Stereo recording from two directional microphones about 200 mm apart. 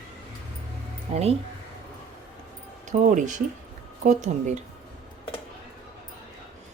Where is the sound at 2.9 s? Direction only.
40° right (ahead or behind).